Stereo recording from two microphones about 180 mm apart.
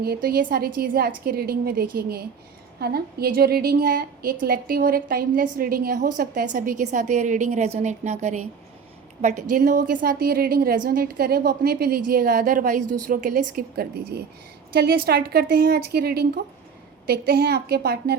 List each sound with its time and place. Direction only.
0.0 s a woman's voice: 55° right (ahead or behind); by 8.4 s 40° right (ahead or behind)
9.2 s a woman's voice: 50° right (ahead or behind)
13.6 s a woman's voice: 60° right (ahead or behind)